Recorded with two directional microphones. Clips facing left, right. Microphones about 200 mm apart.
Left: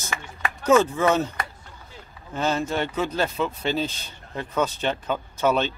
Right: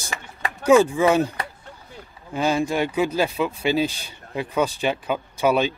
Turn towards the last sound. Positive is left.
turn(degrees=-10)  # may be behind; listen again after turning